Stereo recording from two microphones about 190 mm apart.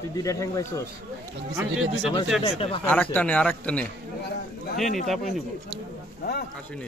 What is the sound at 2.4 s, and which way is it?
Speech, 30° left (ahead or behind).